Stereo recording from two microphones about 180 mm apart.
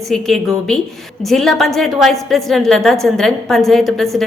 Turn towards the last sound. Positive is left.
turn(degrees=0)  # may be behind; listen again after turning